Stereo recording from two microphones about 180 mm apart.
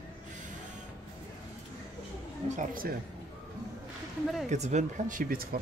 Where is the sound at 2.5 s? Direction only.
50° right (ahead or behind).